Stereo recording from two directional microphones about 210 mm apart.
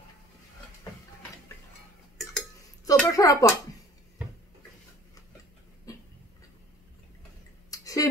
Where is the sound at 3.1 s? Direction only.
15° left (ahead or behind).